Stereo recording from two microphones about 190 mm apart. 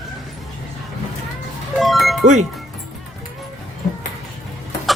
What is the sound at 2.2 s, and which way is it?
Speech, 40° right (ahead or behind).